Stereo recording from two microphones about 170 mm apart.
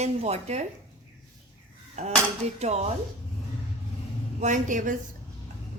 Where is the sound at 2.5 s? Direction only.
40° right (ahead or behind).